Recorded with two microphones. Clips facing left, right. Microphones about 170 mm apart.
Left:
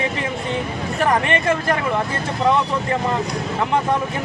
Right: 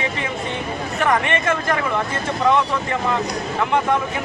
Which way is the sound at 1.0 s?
35° left (ahead or behind).